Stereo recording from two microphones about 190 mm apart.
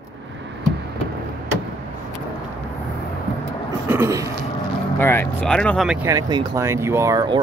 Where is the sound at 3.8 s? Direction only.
15° right (ahead or behind).